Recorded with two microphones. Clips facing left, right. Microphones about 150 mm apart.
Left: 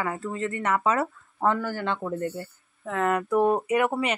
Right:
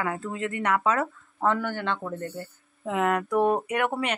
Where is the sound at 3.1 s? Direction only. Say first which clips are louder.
Left 2 dB; centre (ahead or behind).